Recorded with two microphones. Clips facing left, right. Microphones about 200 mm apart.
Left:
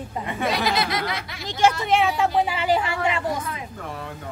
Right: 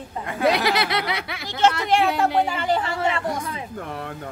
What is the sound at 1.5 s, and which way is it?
Speech, 10° left (ahead or behind).